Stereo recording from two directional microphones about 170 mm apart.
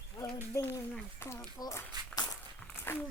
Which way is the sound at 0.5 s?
10° left (ahead or behind).